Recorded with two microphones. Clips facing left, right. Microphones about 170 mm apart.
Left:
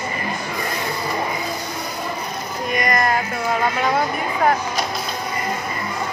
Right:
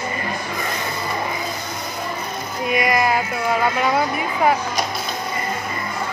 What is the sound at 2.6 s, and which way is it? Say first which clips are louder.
Music: right 2 dB; 5° right (ahead or behind).